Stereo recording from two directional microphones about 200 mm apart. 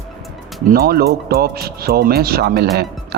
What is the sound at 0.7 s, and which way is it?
Speech, 50° right (ahead or behind).